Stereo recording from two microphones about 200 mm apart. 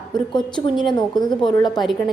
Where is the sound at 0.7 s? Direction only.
Centre (ahead or behind).